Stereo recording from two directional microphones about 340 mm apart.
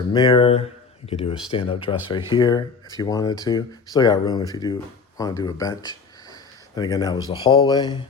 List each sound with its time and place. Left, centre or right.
0.1 s speech: centre